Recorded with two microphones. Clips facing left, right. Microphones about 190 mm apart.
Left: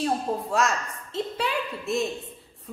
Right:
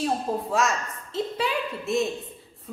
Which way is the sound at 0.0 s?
Centre (ahead or behind).